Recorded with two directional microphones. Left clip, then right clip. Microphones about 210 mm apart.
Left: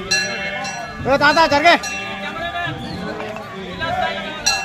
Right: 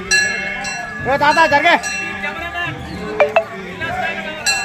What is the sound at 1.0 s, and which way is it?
Speech, 65° left (ahead or behind).